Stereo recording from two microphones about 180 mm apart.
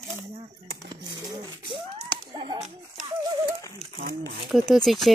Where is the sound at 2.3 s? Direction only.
25° right (ahead or behind).